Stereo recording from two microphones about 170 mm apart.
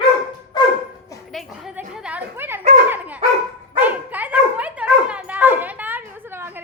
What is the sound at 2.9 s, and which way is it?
Dog, 10° right (ahead or behind).